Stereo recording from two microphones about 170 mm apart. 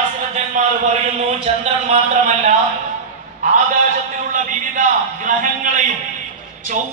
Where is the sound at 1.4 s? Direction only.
40° right (ahead or behind).